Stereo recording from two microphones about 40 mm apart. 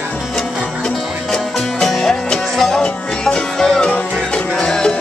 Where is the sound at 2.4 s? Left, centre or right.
Centre.